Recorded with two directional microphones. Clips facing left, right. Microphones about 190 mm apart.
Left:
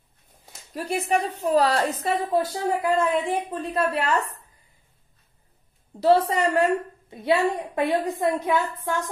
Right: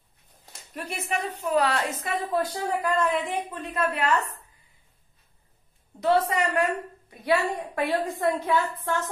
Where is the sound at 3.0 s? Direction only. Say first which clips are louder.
Left 3 dB; 30° left (ahead or behind).